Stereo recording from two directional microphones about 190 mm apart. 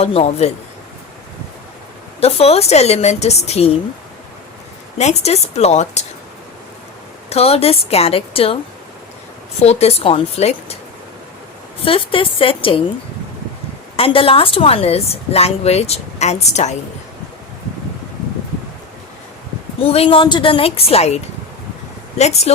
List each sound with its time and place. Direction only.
0.0 s a woman's voice: 30° left (ahead or behind)
2.2 s a woman's voice: 35° left (ahead or behind)
4.9 s a woman's voice: 35° left (ahead or behind)
7.3 s a woman's voice: 30° left (ahead or behind)
9.6 s a woman's voice: 35° left (ahead or behind)
11.9 s speech: 30° left (ahead or behind)
13.9 s a woman's voice: 30° left (ahead or behind)
19.8 s a woman's voice: 30° left (ahead or behind)
22.2 s a woman's voice: 35° left (ahead or behind)